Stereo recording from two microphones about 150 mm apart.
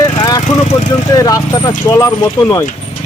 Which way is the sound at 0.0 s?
25° left (ahead or behind).